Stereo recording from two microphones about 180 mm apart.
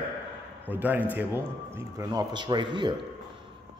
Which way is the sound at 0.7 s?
10° right (ahead or behind).